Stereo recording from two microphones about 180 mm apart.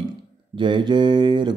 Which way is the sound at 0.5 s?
25° right (ahead or behind).